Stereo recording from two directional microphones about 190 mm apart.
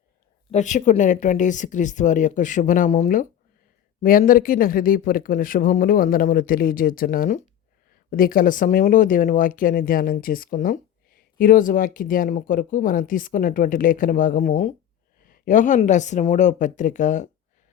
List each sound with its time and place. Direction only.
0.5 s speech: 40° left (ahead or behind)